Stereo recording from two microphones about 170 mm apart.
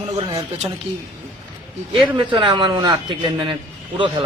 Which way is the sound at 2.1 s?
25° right (ahead or behind).